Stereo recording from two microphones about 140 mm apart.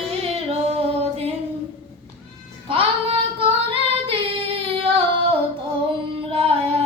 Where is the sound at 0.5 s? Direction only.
45° right (ahead or behind).